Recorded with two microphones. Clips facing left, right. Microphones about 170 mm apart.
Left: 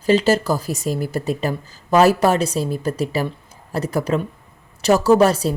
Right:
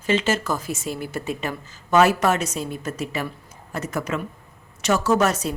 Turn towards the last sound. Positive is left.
turn(degrees=30)  # may be behind; listen again after turning